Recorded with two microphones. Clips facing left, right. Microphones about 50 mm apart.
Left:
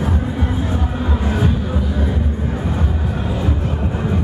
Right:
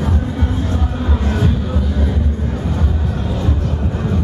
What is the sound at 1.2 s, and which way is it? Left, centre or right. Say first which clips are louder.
Music: even; centre.